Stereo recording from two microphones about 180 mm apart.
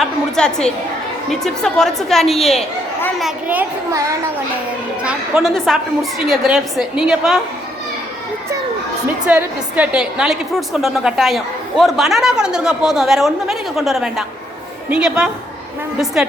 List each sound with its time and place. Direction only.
0.0 s a sound: 5° left (ahead or behind)
1.3 s a woman's voice: 5° left (ahead or behind)
5.0 s a woman's voice: centre (ahead or behind)
9.2 s a woman's voice: 5° right (ahead or behind)